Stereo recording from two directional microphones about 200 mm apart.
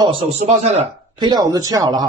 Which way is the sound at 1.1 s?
20° right (ahead or behind).